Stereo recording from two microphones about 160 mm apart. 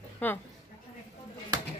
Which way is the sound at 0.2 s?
10° left (ahead or behind).